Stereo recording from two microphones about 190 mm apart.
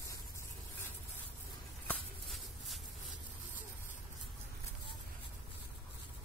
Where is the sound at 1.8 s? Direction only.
Centre (ahead or behind).